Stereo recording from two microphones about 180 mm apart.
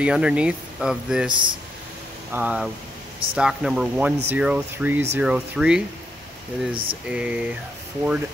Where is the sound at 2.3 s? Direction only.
10° right (ahead or behind).